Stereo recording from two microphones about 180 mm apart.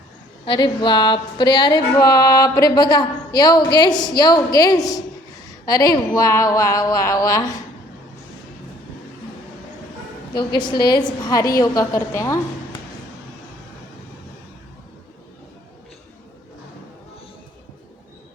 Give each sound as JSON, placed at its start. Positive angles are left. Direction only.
{"t": 0.4, "sound": "music", "side_deg": 25}
{"t": 5.6, "sound": "a woman's voice", "side_deg": 20}
{"t": 10.3, "sound": "music", "side_deg": 25}
{"t": 11.5, "sound": "a woman's voice", "side_deg": 20}